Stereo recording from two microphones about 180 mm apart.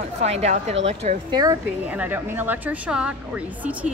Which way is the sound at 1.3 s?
20° right (ahead or behind).